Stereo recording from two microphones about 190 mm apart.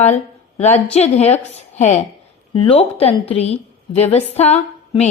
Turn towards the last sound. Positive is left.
turn(degrees=35)  # may be behind; listen again after turning